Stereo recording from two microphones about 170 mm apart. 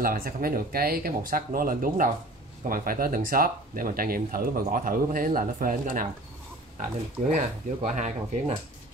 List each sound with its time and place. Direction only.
0.0 s speech: 60° right (ahead or behind)
7.2 s speech: 45° right (ahead or behind)